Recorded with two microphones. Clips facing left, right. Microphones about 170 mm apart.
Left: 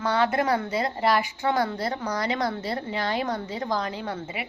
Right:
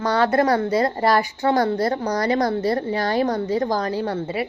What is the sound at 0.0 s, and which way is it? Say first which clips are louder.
A woman's voice: right 5 dB; 40° right (ahead or behind).